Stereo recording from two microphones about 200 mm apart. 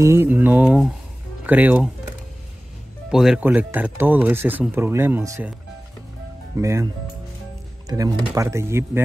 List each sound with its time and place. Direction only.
0.0 s speech: 10° right (ahead or behind)
3.1 s speech: centre (ahead or behind)
6.5 s speech: 15° right (ahead or behind)